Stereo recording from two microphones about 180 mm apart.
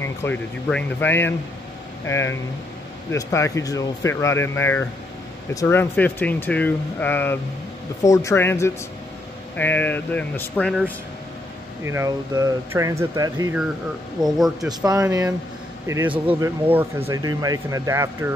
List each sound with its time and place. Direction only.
0.0 s speech: 10° left (ahead or behind)
11.8 s speech: 15° right (ahead or behind)
14.2 s speech: centre (ahead or behind)
14.7 s speech: 20° right (ahead or behind)